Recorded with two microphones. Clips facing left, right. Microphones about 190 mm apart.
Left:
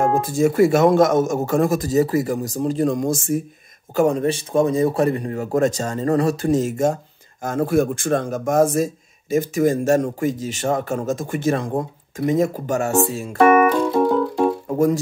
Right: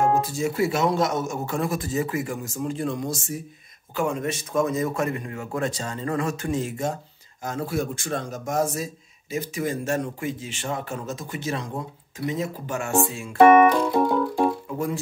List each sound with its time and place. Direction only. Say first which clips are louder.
0.0 s speech: left 5 dB; 50° left (ahead or behind)
3.9 s speech: left 8 dB; 40° left (ahead or behind)
14.7 s music: left 10 dB; 45° left (ahead or behind)